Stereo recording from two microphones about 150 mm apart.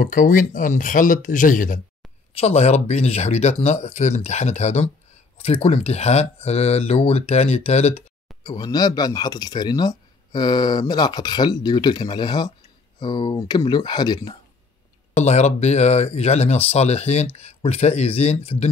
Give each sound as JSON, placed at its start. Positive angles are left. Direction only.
{"t": 0.0, "sound": "speech", "side_deg": 60}
{"t": 2.3, "sound": "speech", "side_deg": 45}
{"t": 8.5, "sound": "speech", "side_deg": 25}
{"t": 15.1, "sound": "speech", "side_deg": 50}